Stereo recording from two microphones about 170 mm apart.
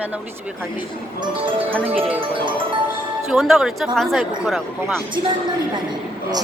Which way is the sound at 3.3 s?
Centre (ahead or behind).